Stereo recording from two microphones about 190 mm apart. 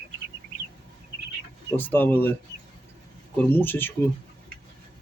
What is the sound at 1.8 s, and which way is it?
Speech, 10° left (ahead or behind).